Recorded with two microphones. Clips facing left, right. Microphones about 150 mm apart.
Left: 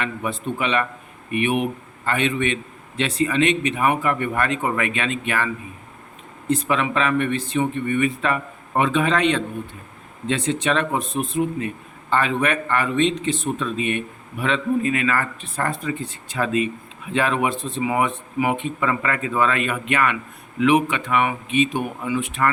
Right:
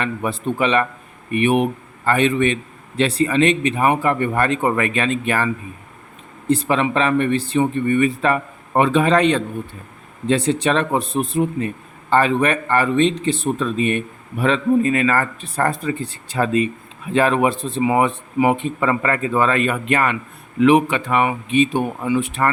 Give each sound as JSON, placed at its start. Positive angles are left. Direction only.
{"t": 0.0, "sound": "speech", "side_deg": -35}
{"t": 6.5, "sound": "speech", "side_deg": -30}